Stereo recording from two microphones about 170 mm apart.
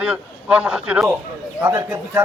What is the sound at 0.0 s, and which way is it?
A man's voice, 5° right (ahead or behind).